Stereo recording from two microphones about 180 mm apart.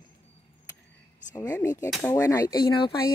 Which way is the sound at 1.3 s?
20° left (ahead or behind).